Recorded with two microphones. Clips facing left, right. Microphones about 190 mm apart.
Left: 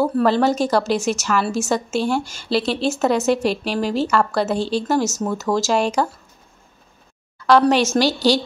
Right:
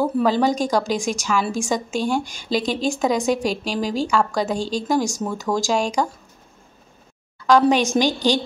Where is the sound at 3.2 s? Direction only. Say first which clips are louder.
Left 2 dB; 5° left (ahead or behind).